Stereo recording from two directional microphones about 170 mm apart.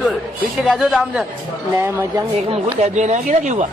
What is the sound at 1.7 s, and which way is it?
Speech, 15° right (ahead or behind).